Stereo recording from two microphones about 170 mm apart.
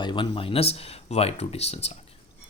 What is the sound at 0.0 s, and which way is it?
Speech, 30° left (ahead or behind).